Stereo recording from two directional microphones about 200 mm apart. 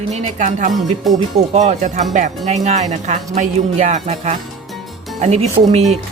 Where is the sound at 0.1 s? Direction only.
35° right (ahead or behind).